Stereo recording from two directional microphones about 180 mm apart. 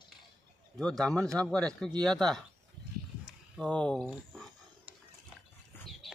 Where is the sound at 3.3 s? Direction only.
Centre (ahead or behind).